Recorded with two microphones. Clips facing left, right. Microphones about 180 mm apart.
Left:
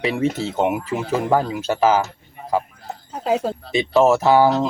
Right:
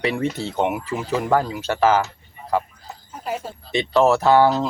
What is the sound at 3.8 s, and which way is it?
Speech, 10° left (ahead or behind).